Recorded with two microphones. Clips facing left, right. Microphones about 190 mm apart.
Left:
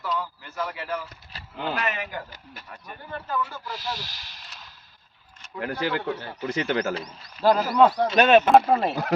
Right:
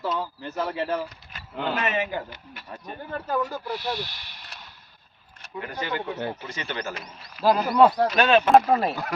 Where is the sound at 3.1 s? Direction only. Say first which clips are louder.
Right 3 dB; 40° right (ahead or behind).